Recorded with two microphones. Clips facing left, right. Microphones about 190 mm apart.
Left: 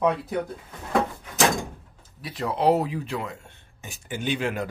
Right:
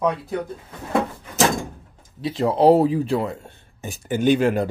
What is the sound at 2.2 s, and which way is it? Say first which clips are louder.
Speech: right 7 dB; 30° right (ahead or behind).